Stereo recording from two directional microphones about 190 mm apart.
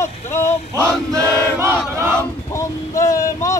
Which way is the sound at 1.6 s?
15° right (ahead or behind).